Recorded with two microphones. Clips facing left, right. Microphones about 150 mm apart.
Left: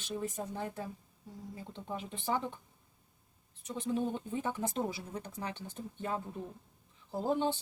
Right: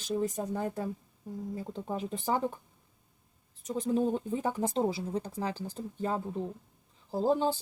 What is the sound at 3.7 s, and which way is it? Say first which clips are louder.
Speech: right 5 dB; 40° right (ahead or behind).